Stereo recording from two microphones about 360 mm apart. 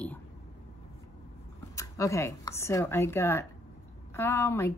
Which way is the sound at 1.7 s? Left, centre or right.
Centre.